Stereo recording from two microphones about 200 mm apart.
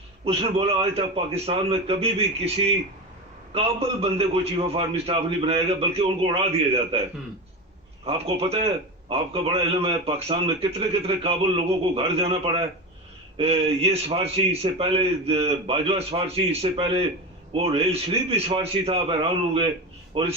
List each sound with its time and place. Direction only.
0.3 s a man's voice: 30° right (ahead or behind)
3.5 s a man's voice: 30° right (ahead or behind)
8.0 s a man's voice: 30° right (ahead or behind)
20.1 s a man's voice: 30° right (ahead or behind)